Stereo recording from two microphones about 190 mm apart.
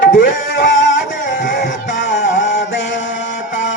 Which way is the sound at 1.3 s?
70° left (ahead or behind).